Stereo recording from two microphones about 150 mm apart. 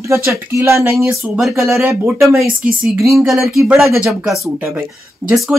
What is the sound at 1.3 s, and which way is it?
Speech, centre (ahead or behind).